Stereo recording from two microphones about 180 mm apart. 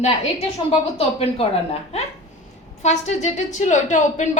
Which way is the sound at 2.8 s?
40° left (ahead or behind).